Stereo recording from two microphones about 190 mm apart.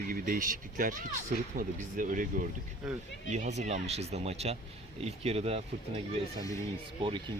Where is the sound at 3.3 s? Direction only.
35° right (ahead or behind).